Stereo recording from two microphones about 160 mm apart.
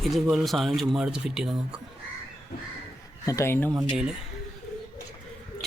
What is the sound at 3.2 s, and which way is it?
Speech, 20° left (ahead or behind).